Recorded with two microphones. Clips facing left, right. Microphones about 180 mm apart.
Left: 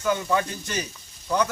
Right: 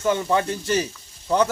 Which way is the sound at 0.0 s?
30° right (ahead or behind).